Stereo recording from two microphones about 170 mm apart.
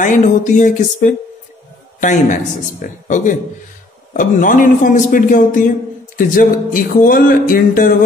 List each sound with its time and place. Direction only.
0.0 s a man's voice: 45° left (ahead or behind)